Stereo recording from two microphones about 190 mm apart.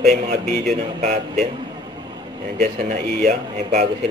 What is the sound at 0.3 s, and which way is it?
Speech, 55° right (ahead or behind).